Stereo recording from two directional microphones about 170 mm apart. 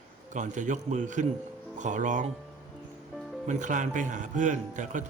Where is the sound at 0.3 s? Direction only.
45° right (ahead or behind).